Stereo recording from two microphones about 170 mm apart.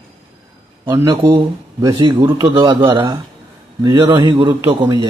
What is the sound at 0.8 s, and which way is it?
A man's voice, 20° right (ahead or behind).